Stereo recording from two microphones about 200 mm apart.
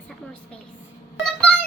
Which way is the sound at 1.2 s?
5° left (ahead or behind).